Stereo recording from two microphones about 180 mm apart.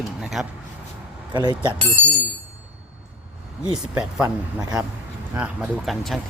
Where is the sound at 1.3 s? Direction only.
25° right (ahead or behind).